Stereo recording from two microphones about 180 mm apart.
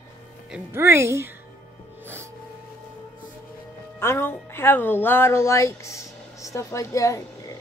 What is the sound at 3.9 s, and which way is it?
Speech, 15° left (ahead or behind).